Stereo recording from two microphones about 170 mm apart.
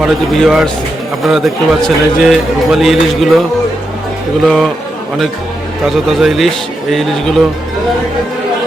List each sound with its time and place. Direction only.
0.0 s a man's voice: centre (ahead or behind)
4.4 s a man's voice: 5° left (ahead or behind)
5.8 s a man's voice: centre (ahead or behind)